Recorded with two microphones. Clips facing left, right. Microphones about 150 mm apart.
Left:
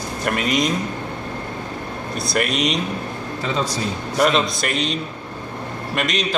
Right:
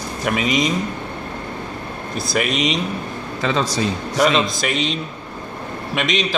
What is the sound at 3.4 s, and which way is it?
Speech, 90° right.